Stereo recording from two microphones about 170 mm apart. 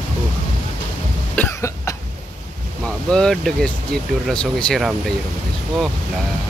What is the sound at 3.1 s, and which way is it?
Speech, 5° left (ahead or behind).